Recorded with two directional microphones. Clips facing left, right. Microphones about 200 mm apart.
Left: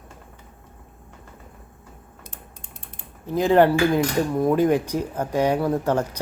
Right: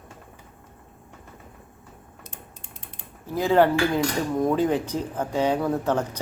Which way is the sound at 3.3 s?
15° left (ahead or behind).